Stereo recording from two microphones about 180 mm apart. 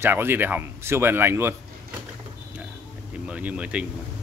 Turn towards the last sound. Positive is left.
turn(degrees=-5)  # may be behind; listen again after turning